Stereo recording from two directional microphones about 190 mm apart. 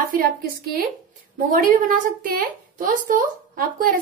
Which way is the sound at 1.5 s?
45° right (ahead or behind).